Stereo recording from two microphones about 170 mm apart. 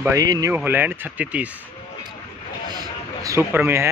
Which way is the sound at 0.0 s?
20° right (ahead or behind).